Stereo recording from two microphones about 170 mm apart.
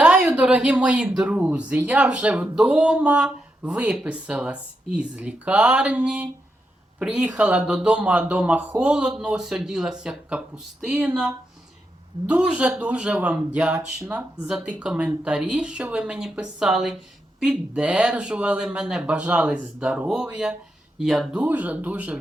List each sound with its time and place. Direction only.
0.0 s speech: 5° right (ahead or behind)